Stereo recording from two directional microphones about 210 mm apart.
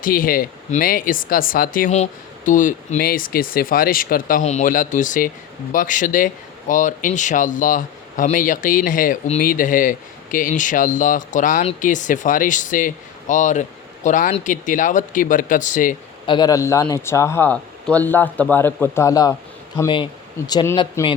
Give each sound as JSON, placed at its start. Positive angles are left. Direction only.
{"t": 0.0, "sound": "speech", "side_deg": 40}
{"t": 16.2, "sound": "a man's voice", "side_deg": 20}